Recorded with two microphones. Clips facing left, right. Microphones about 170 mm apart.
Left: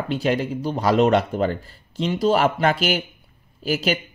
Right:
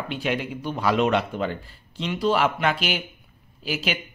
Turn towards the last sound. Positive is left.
turn(degrees=40)  # may be behind; listen again after turning